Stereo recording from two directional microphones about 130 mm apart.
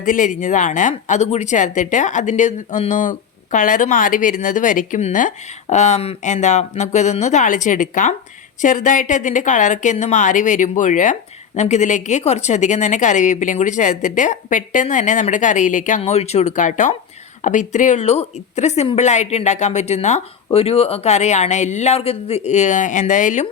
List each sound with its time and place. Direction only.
0.0 s a woman's voice: 85° left
16.0 s speech: 55° left (ahead or behind); by 23.5 s 70° left (ahead or behind)